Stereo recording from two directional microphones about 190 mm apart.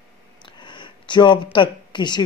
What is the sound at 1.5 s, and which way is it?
Speech, 25° left (ahead or behind).